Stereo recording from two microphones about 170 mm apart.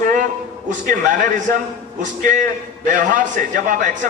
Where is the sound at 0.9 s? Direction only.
45° right (ahead or behind).